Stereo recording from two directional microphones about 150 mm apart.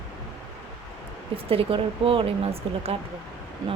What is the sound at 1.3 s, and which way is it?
A woman's voice, 40° right (ahead or behind).